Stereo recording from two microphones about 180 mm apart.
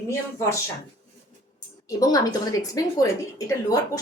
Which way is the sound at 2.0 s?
20° left (ahead or behind).